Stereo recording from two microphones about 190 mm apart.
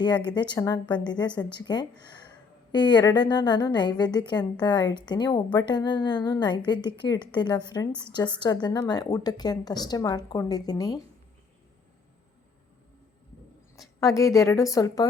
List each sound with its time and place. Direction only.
0.3 s a woman's voice: 25° left (ahead or behind)
13.7 s a woman's voice: 15° left (ahead or behind)